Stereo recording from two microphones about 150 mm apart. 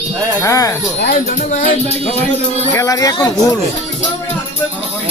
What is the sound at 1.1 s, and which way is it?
Speech, 55° left (ahead or behind).